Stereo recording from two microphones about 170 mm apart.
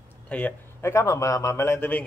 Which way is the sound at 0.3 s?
10° left (ahead or behind).